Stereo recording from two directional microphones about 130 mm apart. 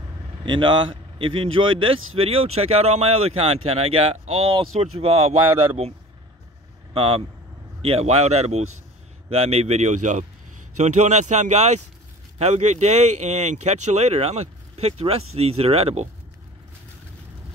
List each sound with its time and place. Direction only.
0.5 s speech: 35° right (ahead or behind)